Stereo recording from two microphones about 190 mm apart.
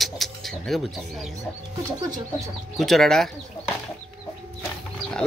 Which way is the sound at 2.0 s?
20° right (ahead or behind).